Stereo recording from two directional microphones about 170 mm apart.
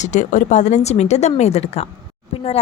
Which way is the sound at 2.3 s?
35° left (ahead or behind).